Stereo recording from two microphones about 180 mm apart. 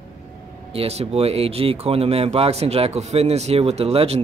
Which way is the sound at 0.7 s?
35° right (ahead or behind).